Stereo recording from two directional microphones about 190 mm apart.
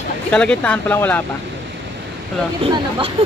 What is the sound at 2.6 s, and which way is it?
Speech, 30° right (ahead or behind).